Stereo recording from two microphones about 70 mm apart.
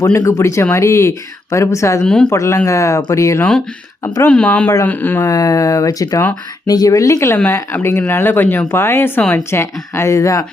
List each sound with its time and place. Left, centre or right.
0.3 s speech: left
4.3 s speech: centre
5.3 s speech: left